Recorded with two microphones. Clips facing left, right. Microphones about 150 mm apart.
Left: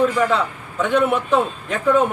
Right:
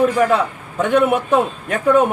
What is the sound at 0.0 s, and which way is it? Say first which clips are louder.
A man's voice: right 3 dB; 50° right (ahead or behind).